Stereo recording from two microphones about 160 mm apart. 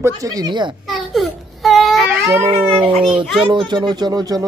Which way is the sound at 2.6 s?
35° right (ahead or behind).